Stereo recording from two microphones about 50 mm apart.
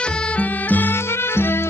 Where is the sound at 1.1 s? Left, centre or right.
Left.